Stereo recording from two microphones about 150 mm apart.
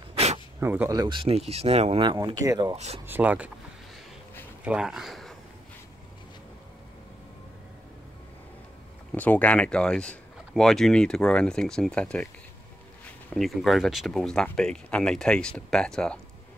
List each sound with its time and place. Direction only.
0.6 s speech: 15° right (ahead or behind)
0.9 s speech: 30° right (ahead or behind)
2.7 s speech: 45° right (ahead or behind)
3.1 s speech: 10° right (ahead or behind)
4.6 s speech: 5° right (ahead or behind)
9.1 s speech: 10° left (ahead or behind)
13.3 s speech: centre (ahead or behind)